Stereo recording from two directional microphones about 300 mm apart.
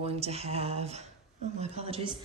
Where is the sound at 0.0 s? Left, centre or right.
Right.